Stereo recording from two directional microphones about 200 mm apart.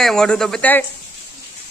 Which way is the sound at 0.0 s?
Centre (ahead or behind).